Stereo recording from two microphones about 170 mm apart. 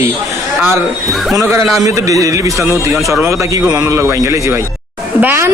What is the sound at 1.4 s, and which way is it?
A man's voice, 15° right (ahead or behind).